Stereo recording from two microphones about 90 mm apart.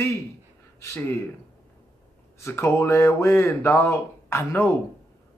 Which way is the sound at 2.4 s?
30° left (ahead or behind).